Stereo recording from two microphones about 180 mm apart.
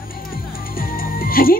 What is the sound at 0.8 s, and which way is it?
Music, 55° left (ahead or behind).